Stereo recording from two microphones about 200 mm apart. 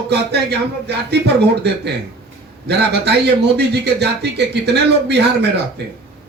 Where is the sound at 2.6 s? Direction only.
55° right (ahead or behind).